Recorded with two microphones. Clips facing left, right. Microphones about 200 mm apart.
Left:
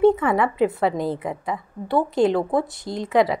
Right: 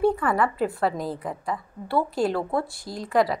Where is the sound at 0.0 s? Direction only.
20° left (ahead or behind).